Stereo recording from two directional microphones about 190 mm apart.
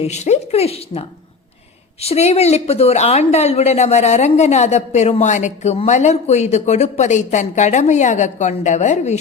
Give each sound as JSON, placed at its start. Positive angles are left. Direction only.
{"t": 0.0, "sound": "a woman's voice", "side_deg": 35}